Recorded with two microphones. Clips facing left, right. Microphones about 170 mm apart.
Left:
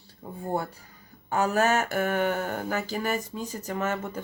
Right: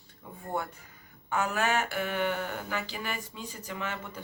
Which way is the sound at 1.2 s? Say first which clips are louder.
Left 5 dB; 40° left (ahead or behind).